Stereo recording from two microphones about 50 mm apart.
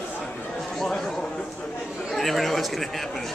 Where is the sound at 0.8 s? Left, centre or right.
Centre.